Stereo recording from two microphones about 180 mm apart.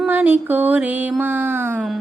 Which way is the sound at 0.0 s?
10° right (ahead or behind).